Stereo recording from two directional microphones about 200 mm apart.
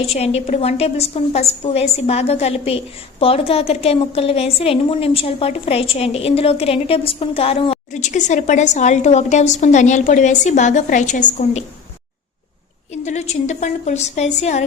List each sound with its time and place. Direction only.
0.1 s a woman's voice: 30° left (ahead or behind)
12.9 s a woman's voice: 35° left (ahead or behind)